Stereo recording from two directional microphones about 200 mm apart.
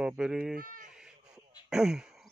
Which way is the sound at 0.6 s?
45° right (ahead or behind).